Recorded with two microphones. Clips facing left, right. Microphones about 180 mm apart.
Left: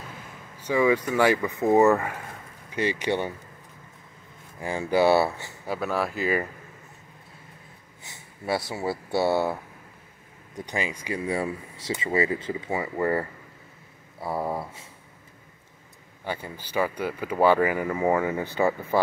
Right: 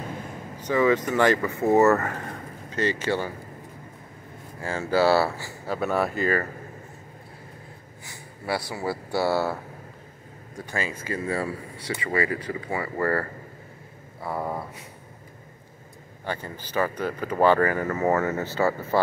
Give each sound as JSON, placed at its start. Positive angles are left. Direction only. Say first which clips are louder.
{"t": 0.6, "sound": "speech", "louder": "right 1 dB", "side_deg": 10}
{"t": 4.6, "sound": "speech", "louder": "even", "side_deg": 15}
{"t": 5.8, "sound": "speech", "louder": "right 3 dB", "side_deg": 0}
{"t": 8.0, "sound": "speech", "louder": "even", "side_deg": 25}
{"t": 16.3, "sound": "speech", "louder": "right 1 dB", "side_deg": 10}